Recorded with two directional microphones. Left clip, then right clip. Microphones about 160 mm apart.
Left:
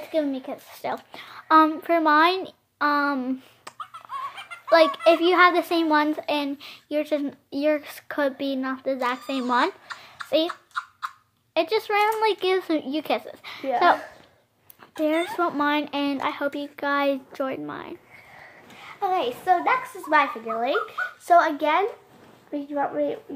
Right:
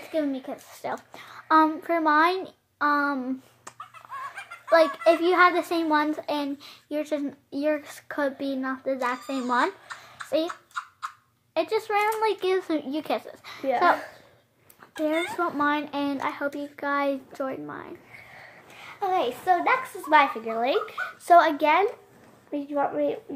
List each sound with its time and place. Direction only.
0.1 s a child's voice: 20° left (ahead or behind)
15.3 s a child's voice: 20° left (ahead or behind)
18.8 s a child's voice: 5° right (ahead or behind); by 23.1 s 20° right (ahead or behind)